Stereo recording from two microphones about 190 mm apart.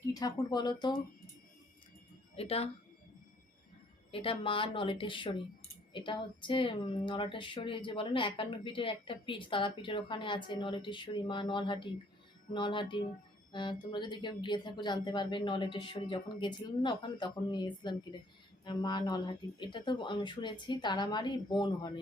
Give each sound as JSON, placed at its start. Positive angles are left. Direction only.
{"t": 0.1, "sound": "a woman's voice", "side_deg": 20}
{"t": 2.3, "sound": "speech", "side_deg": 30}
{"t": 4.1, "sound": "a woman's voice", "side_deg": 30}